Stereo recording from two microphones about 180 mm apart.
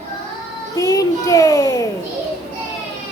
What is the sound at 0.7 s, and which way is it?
Child singing, 20° left (ahead or behind).